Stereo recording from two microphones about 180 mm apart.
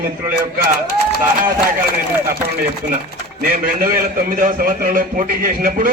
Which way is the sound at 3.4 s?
50° right (ahead or behind).